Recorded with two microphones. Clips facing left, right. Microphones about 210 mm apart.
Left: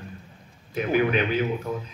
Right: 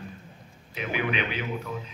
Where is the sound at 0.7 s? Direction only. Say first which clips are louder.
Left 7 dB; 45° left (ahead or behind).